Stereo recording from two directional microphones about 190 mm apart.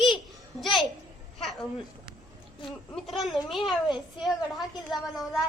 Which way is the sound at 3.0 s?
Centre (ahead or behind).